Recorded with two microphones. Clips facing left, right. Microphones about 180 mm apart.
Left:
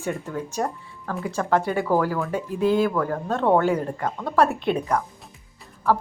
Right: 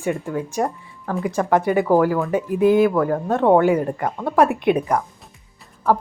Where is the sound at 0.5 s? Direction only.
15° right (ahead or behind).